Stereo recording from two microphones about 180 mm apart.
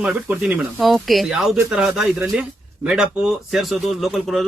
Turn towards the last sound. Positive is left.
turn(degrees=0)  # may be behind; listen again after turning